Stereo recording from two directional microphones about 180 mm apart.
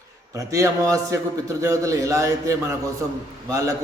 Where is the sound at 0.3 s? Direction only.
15° right (ahead or behind).